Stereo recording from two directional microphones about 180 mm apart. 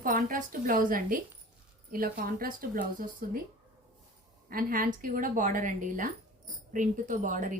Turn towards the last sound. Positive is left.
turn(degrees=-45)  # may be behind; listen again after turning